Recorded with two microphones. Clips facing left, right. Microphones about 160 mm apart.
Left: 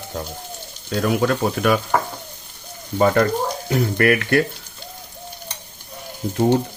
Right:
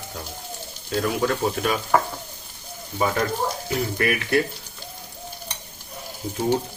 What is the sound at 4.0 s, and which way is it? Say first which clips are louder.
Speech: left 5 dB; 70° left (ahead or behind).